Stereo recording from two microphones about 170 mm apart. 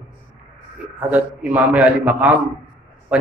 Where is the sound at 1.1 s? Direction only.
10° right (ahead or behind).